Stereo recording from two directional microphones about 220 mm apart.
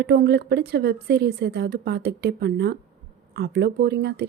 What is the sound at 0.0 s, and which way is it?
Speech, 50° right (ahead or behind).